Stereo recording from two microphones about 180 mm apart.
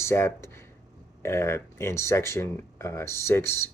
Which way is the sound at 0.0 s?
15° left (ahead or behind).